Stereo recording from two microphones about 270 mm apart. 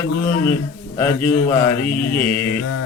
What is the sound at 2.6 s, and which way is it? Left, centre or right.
Mantra, left.